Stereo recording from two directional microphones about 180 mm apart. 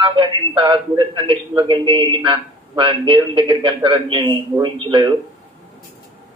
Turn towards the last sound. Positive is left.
turn(degrees=-25)  # may be behind; listen again after turning